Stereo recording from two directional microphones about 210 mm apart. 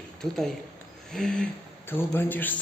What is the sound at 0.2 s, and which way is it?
A man's voice, centre (ahead or behind).